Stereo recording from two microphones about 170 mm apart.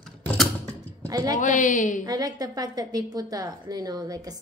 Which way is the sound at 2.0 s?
20° right (ahead or behind).